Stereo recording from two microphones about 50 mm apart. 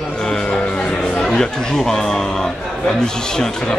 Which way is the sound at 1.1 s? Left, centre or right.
Centre.